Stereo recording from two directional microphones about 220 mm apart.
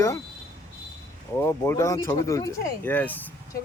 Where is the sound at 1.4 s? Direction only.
10° left (ahead or behind).